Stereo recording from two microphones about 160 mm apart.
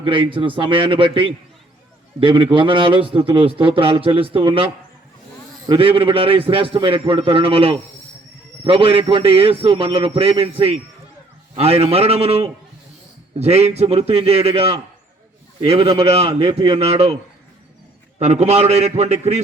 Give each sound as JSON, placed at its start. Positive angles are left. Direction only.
{"t": 0.0, "sound": "a man's voice", "side_deg": -30}
{"t": 18.2, "sound": "a man's voice", "side_deg": -45}